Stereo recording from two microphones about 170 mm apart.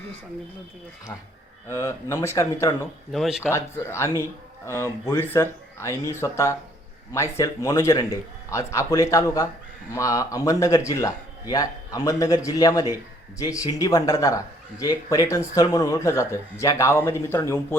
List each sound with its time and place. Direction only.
1.7 s speech: 15° left (ahead or behind)
3.1 s speech: centre (ahead or behind)
3.5 s a man's voice: 15° left (ahead or behind)